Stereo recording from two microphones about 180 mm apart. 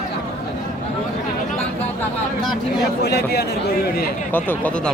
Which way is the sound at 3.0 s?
65° left (ahead or behind).